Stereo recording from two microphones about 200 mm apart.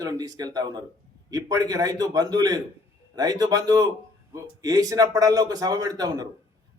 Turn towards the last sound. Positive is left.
turn(degrees=-20)  # may be behind; listen again after turning